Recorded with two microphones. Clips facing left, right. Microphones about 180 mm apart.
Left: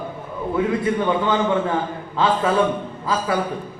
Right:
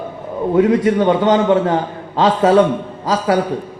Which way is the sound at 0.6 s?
80° right.